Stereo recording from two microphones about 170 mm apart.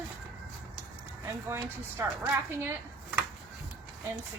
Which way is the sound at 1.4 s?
15° right (ahead or behind).